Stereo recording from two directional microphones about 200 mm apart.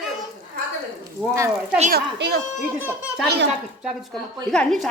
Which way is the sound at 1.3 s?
15° right (ahead or behind).